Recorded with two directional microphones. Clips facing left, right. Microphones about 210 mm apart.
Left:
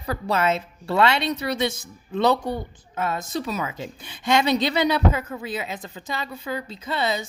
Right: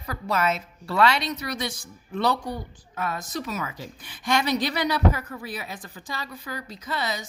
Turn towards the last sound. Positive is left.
turn(degrees=25)  # may be behind; listen again after turning